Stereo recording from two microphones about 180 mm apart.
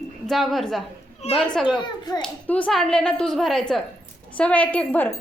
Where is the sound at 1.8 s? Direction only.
25° left (ahead or behind).